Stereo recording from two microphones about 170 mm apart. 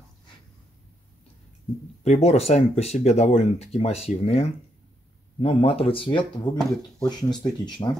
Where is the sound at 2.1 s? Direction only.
40° left (ahead or behind).